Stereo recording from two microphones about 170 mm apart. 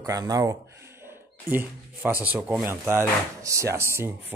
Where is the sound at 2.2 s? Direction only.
10° right (ahead or behind).